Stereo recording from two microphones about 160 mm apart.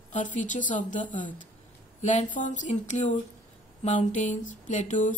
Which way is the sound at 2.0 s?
50° left (ahead or behind).